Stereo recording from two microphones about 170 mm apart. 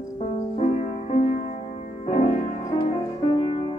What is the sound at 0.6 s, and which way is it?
Music, 40° left (ahead or behind).